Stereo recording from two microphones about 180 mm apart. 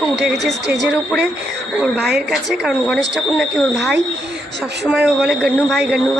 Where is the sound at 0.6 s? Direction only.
70° right (ahead or behind).